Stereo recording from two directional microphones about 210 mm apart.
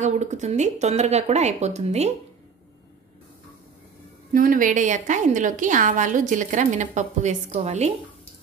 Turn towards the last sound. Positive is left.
turn(degrees=-30)  # may be behind; listen again after turning